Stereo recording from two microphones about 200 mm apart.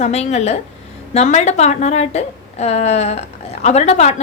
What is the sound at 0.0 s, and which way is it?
A woman's voice, 35° left (ahead or behind).